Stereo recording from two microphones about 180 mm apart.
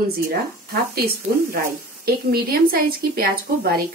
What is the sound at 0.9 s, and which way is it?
A woman's voice, 55° right (ahead or behind).